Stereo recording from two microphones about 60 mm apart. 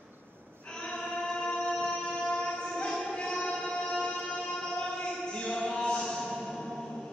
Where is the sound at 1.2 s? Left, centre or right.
Centre.